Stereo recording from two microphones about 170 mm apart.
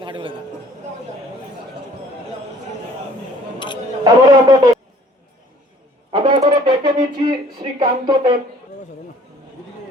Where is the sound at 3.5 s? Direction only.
30° left (ahead or behind).